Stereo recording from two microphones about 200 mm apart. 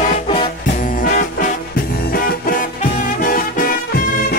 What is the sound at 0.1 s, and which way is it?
Music, 30° left (ahead or behind).